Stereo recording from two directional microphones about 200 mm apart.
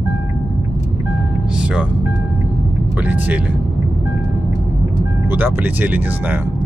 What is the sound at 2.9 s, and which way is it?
Speech, 10° right (ahead or behind).